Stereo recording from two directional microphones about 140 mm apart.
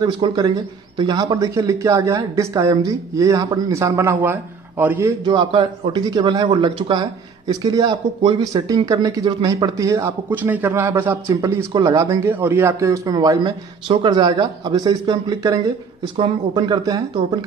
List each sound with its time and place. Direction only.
0.0 s speech: 30° right (ahead or behind); by 5.1 s 15° right (ahead or behind)
5.2 s a man's voice: 35° right (ahead or behind)